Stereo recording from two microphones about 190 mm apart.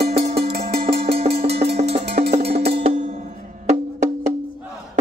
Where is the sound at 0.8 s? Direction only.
30° right (ahead or behind).